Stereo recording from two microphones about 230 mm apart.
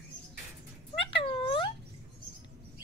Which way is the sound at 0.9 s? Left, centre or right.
Left.